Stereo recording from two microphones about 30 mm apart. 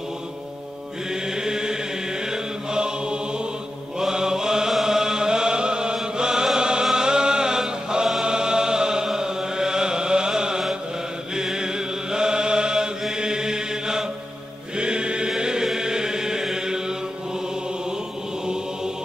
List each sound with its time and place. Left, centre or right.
1.3 s chant: right
2.3 s mantra: right
4.8 s chant: centre
13.2 s mantra: right
14.8 s chant: right